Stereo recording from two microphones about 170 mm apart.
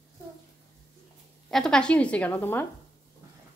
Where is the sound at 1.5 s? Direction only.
5° left (ahead or behind).